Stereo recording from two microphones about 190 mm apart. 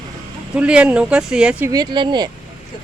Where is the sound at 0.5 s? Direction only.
5° right (ahead or behind).